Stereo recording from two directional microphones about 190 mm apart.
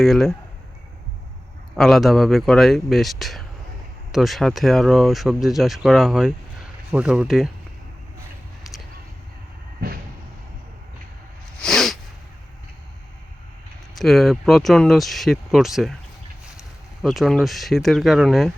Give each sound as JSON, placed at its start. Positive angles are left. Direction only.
{"t": 0.0, "sound": "speech", "side_deg": 0}
{"t": 1.7, "sound": "speech", "side_deg": 0}
{"t": 8.6, "sound": "a sound", "side_deg": 0}
{"t": 11.6, "sound": "sneeze", "side_deg": 0}
{"t": 13.9, "sound": "speech", "side_deg": 0}
{"t": 17.0, "sound": "speech", "side_deg": 0}